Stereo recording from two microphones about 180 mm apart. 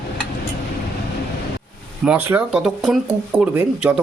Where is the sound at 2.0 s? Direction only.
5° right (ahead or behind).